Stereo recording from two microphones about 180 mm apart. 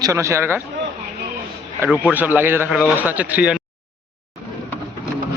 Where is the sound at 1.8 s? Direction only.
10° right (ahead or behind).